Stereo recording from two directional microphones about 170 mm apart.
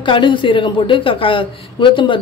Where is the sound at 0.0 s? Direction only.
30° left (ahead or behind).